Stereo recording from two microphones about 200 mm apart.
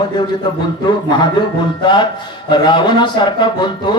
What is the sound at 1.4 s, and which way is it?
Speech, 25° left (ahead or behind).